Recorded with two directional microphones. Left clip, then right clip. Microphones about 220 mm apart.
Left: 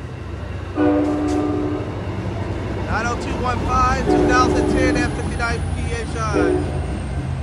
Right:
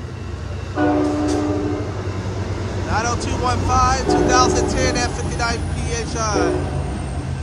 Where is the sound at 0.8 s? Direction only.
20° right (ahead or behind).